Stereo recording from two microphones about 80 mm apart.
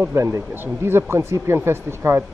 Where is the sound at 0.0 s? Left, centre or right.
Right.